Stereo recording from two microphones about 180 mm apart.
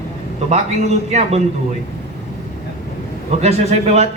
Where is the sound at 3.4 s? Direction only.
35° right (ahead or behind).